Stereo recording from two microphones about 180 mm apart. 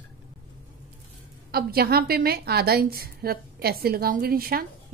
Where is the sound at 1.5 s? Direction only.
60° right (ahead or behind).